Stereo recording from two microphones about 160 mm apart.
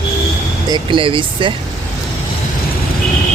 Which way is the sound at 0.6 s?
30° right (ahead or behind).